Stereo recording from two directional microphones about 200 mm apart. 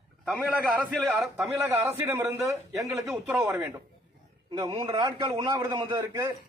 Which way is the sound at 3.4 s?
15° right (ahead or behind).